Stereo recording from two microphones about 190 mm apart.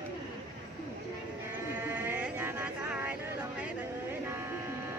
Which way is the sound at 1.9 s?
10° right (ahead or behind).